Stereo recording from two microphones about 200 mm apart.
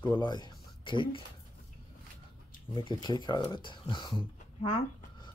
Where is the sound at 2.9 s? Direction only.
20° left (ahead or behind).